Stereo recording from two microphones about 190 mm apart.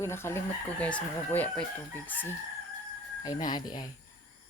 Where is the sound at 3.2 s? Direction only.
20° left (ahead or behind).